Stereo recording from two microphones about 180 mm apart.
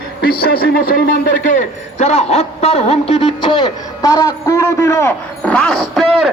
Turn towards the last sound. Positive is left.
turn(degrees=0)  # may be behind; listen again after turning